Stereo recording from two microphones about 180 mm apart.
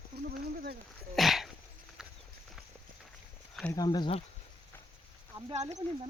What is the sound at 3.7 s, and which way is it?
Speech, 20° left (ahead or behind).